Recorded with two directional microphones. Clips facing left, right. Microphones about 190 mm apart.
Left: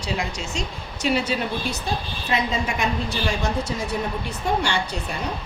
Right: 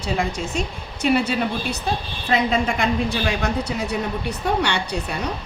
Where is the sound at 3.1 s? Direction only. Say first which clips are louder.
Right 2 dB; 60° right (ahead or behind).